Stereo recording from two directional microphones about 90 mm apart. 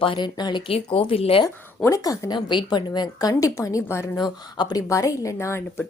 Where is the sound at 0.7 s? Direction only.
85° left.